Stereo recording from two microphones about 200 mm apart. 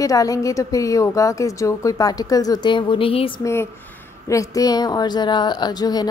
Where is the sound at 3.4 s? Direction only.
15° left (ahead or behind).